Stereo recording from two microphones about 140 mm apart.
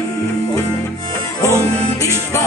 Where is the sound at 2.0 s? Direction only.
25° left (ahead or behind).